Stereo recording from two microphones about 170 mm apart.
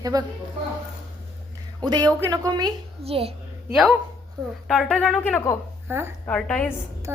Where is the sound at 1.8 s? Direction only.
25° right (ahead or behind).